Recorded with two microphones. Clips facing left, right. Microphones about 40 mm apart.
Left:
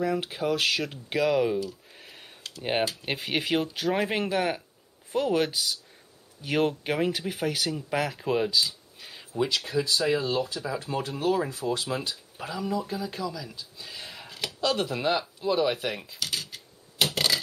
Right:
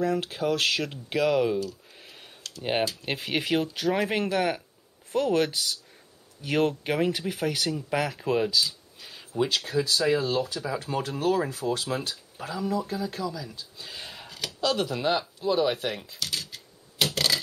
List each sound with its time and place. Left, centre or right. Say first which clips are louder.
0.0 s speech: right 1 dB; centre
1.2 s computer keyboard: even; centre
3.1 s speech: even; centre
10.6 s speech: right 1 dB; centre
11.0 s speech: right 1 dB; left
12.9 s speech: right 1 dB; centre
13.9 s a sound: even; centre
14.3 s a sound: even; centre